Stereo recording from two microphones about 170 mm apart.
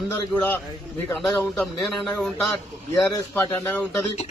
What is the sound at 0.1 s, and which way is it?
Speech, 15° left (ahead or behind).